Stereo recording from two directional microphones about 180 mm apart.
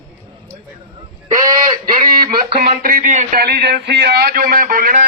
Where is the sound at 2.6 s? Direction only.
55° right (ahead or behind).